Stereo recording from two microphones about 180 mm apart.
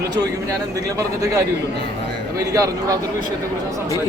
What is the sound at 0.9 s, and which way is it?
Speech, 15° right (ahead or behind).